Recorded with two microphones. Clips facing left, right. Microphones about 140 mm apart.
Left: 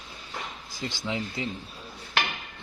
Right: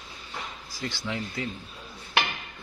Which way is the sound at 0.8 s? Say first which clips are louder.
Left 1 dB; 20° left (ahead or behind).